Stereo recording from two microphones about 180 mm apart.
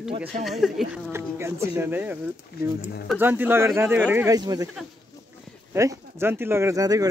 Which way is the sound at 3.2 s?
10° right (ahead or behind).